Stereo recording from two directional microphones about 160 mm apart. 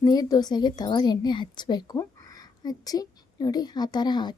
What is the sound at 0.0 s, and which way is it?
A woman's voice, 25° left (ahead or behind).